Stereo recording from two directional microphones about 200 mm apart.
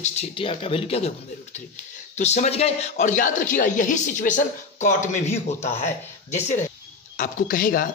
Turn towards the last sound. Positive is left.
turn(degrees=40)  # may be behind; listen again after turning